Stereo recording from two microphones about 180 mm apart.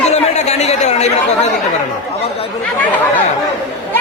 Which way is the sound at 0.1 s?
40° left (ahead or behind).